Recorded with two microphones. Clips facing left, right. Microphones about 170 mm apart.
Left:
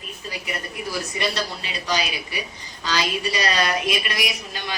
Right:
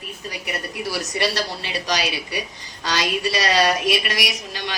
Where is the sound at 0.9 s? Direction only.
75° right (ahead or behind).